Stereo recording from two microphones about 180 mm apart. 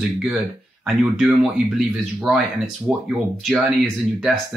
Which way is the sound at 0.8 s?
5° right (ahead or behind).